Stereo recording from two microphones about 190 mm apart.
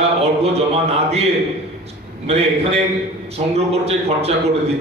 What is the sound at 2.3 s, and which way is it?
A man's voice, 35° right (ahead or behind).